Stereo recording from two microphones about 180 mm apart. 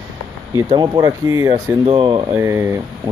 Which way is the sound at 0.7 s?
25° right (ahead or behind).